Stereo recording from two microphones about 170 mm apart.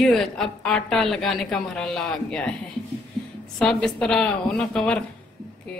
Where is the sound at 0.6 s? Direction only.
5° left (ahead or behind).